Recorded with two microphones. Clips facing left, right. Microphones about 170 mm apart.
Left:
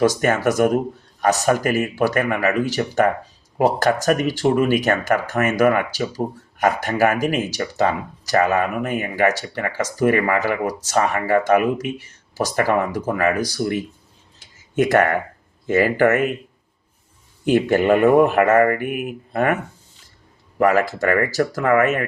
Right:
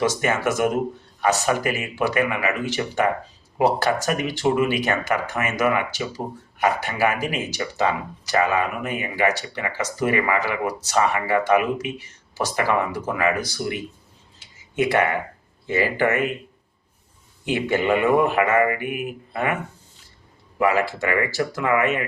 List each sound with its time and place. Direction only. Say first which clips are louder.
0.0 s speech: left 4 dB; 40° left (ahead or behind)
14.3 s a sound: left 4 dB; 45° left (ahead or behind)
15.6 s speech: left 5 dB; 45° left (ahead or behind)
17.4 s speech: left 6 dB; 45° left (ahead or behind)
20.6 s speech: left 3 dB; 45° left (ahead or behind)